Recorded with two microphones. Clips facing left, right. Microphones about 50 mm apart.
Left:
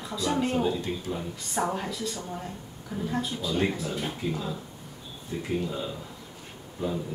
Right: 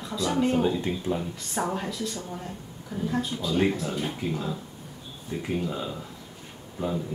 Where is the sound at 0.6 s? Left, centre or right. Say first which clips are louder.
Right 2 dB; centre.